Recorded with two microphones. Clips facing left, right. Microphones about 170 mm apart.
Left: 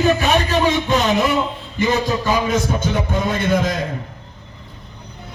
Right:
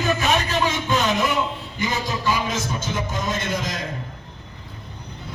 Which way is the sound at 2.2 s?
55° left (ahead or behind).